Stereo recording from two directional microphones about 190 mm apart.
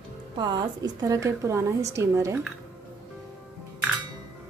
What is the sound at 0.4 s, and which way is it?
A woman's voice, 20° right (ahead or behind).